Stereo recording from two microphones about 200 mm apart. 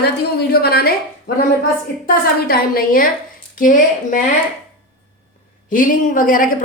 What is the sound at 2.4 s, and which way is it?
A woman's voice, 50° left (ahead or behind).